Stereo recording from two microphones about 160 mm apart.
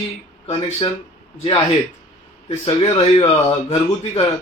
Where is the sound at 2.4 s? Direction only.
30° left (ahead or behind).